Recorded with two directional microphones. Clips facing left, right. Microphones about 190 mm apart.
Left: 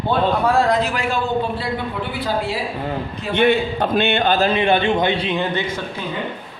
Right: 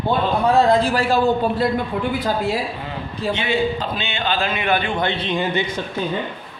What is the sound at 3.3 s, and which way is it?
A man's voice, 55° left (ahead or behind).